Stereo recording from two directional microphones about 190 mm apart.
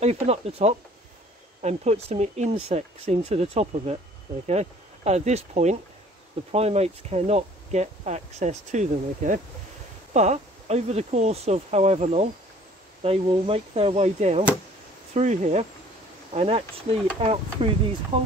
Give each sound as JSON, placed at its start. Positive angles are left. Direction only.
{"t": 0.0, "sound": "speech", "side_deg": -35}